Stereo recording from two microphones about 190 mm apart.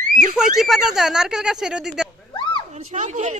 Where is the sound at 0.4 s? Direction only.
Centre (ahead or behind).